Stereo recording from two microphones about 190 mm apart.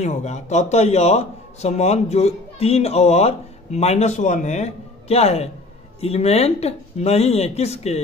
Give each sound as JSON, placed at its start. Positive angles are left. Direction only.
{"t": 0.0, "sound": "a man's voice", "side_deg": 35}